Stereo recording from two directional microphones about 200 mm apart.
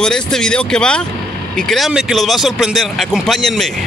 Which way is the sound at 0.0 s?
5° left (ahead or behind).